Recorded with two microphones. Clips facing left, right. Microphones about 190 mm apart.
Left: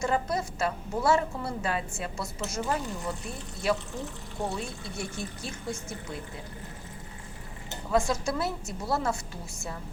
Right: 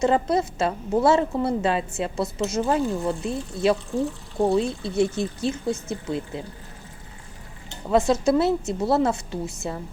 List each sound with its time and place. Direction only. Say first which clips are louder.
0.0 s a woman's voice: right 8 dB; 25° right (ahead or behind)
7.9 s a woman's voice: right 8 dB; 20° right (ahead or behind)